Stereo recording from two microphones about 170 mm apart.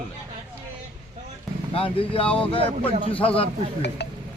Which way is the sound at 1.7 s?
35° left (ahead or behind).